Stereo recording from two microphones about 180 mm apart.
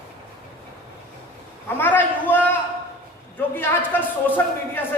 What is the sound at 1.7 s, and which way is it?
A man's voice, 10° left (ahead or behind).